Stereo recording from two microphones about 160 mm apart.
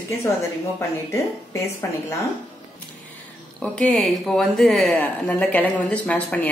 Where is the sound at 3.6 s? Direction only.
5° left (ahead or behind).